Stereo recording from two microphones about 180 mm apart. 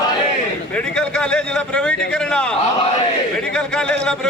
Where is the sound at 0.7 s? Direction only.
5° left (ahead or behind).